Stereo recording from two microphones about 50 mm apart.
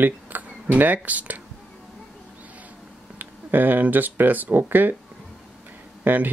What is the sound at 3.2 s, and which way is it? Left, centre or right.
Speech, right.